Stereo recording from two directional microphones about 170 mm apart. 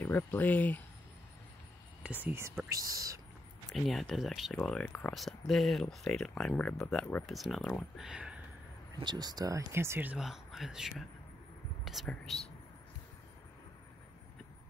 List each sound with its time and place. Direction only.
0.0 s speech: 10° left (ahead or behind)
2.0 s speech: 10° right (ahead or behind)
3.7 s speech: centre (ahead or behind)
4.6 s speech: 10° left (ahead or behind)
9.0 s speech: 25° right (ahead or behind); by 12.4 s centre (ahead or behind)